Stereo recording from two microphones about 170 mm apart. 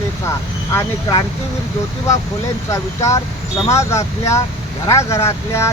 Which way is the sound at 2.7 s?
15° left (ahead or behind).